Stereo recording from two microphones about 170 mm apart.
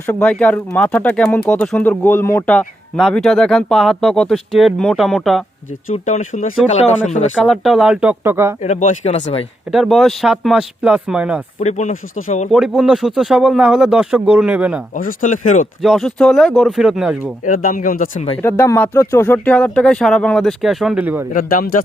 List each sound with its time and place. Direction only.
0.0 s speech: 10° left (ahead or behind)
5.9 s speech: 45° left (ahead or behind)
7.3 s speech: centre (ahead or behind)
8.6 s speech: 45° left (ahead or behind)
9.7 s speech: centre (ahead or behind)
11.6 s speech: 40° left (ahead or behind)
12.5 s speech: centre (ahead or behind)
14.9 s speech: 50° left (ahead or behind)
15.8 s speech: centre (ahead or behind)
17.4 s speech: 50° left (ahead or behind)
18.4 s speech: 15° left (ahead or behind); by 21.2 s 10° right (ahead or behind)
21.3 s speech: 55° left (ahead or behind)